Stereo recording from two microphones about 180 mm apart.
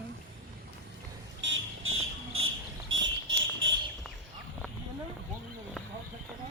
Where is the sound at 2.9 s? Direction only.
90° right.